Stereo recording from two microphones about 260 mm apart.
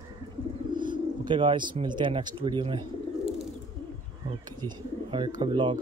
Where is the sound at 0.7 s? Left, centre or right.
Centre.